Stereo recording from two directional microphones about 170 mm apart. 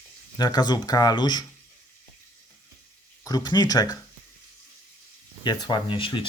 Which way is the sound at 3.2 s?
20° left (ahead or behind).